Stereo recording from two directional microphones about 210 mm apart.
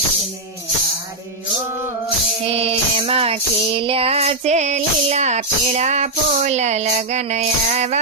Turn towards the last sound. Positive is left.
turn(degrees=-35)  # may be behind; listen again after turning